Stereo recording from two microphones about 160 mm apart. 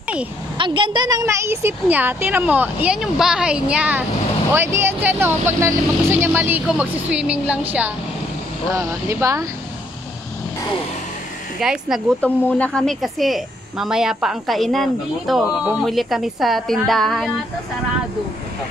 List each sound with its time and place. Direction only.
0.6 s a woman's voice: 30° right (ahead or behind); by 7.9 s 10° right (ahead or behind)
8.7 s speech: 20° right (ahead or behind)
11.6 s speech: 5° right (ahead or behind)
12.2 s speech: 10° left (ahead or behind)